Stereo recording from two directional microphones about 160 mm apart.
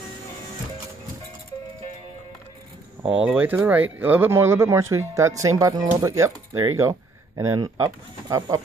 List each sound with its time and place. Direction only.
3.0 s speech: 5° right (ahead or behind)